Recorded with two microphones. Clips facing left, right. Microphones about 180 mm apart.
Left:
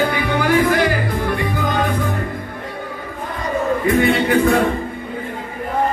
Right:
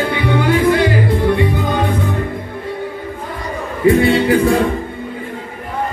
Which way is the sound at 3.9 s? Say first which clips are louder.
Right 6 dB; 35° right (ahead or behind).